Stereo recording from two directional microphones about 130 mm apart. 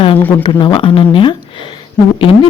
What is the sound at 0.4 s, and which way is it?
Speech, 40° left (ahead or behind).